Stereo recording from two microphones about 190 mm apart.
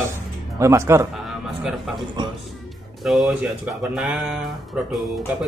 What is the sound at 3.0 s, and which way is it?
Speech, centre (ahead or behind).